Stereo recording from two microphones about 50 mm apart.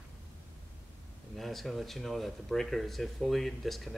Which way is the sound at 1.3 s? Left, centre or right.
Centre.